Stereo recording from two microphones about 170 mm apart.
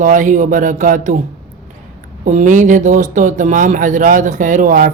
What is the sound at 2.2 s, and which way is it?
Speech, 45° right (ahead or behind).